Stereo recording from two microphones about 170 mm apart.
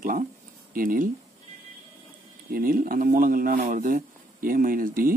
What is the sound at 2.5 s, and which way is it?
Speech, 55° right (ahead or behind).